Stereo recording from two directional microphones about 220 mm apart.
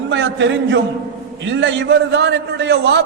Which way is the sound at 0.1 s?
55° right (ahead or behind).